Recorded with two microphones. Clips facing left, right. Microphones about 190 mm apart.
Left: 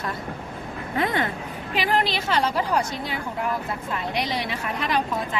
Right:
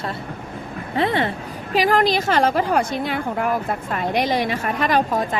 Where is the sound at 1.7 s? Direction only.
40° right (ahead or behind).